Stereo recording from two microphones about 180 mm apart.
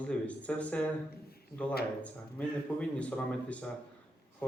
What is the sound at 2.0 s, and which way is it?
Speech, 5° left (ahead or behind).